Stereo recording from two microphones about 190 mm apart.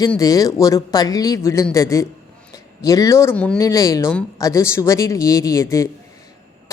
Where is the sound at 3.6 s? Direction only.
15° left (ahead or behind).